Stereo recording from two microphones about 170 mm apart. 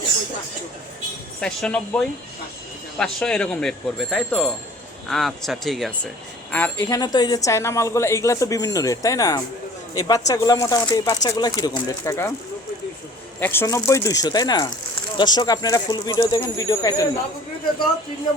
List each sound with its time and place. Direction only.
1.4 s speech: 5° left (ahead or behind)
6.5 s a woman's voice: 10° left (ahead or behind)
13.4 s a woman's voice: 15° left (ahead or behind)